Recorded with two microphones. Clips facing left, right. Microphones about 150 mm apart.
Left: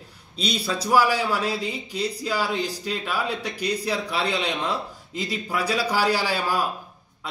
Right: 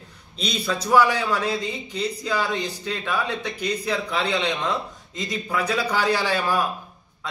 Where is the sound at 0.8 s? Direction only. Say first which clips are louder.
Right 1 dB; 10° left (ahead or behind).